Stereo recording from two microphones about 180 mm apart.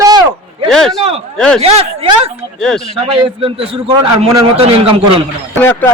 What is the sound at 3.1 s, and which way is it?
A man's voice, 30° right (ahead or behind).